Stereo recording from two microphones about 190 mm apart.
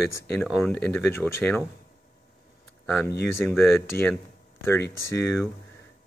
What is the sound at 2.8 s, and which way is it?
A man's voice, 5° left (ahead or behind).